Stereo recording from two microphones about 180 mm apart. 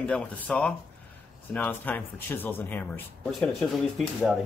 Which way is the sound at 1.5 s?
10° left (ahead or behind).